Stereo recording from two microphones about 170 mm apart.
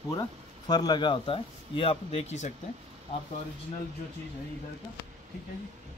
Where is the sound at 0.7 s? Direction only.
25° left (ahead or behind); by 2.5 s 40° left (ahead or behind).